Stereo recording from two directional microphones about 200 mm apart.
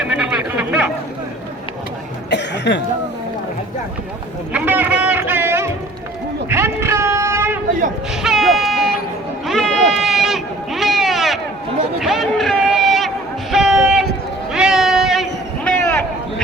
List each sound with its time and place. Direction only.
0.0 s chatter: 5° right (ahead or behind)
2.3 s cough: 60° left (ahead or behind)
4.5 s a sound: 10° right (ahead or behind)
8.1 s vehicle: centre (ahead or behind)
9.5 s sheep: centre (ahead or behind)
11.9 s a sound: centre (ahead or behind)